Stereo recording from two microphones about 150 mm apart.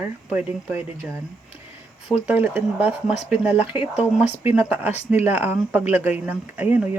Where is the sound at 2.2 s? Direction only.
10° right (ahead or behind).